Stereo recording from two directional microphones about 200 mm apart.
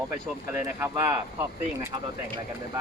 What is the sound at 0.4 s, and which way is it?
Speech, 15° right (ahead or behind).